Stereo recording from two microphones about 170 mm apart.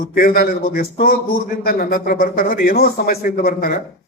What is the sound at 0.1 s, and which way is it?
A man's voice, 60° left (ahead or behind).